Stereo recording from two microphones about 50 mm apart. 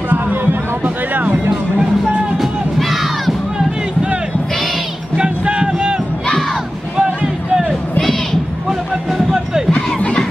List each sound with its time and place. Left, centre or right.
0.1 s music: right
2.3 s crowd: centre
3.5 s music: centre
7.0 s music: centre
8.0 s a sound: centre
9.3 s crowd: centre
9.7 s chatter: centre